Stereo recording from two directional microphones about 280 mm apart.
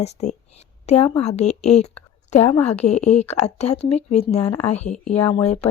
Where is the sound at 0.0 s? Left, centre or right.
Left.